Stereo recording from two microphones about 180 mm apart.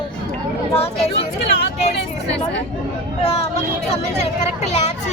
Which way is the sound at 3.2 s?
35° left (ahead or behind).